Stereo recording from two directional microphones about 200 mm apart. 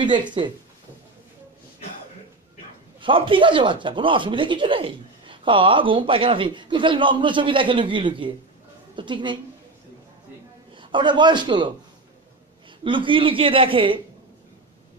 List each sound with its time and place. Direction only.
0.0 s speech: 25° right (ahead or behind)
3.0 s speech: 25° right (ahead or behind)
10.7 s a man's voice: 25° right (ahead or behind)
12.8 s speech: 25° right (ahead or behind)